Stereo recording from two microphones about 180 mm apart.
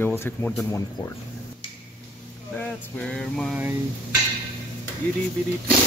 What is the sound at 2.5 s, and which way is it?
Speech, 5° left (ahead or behind).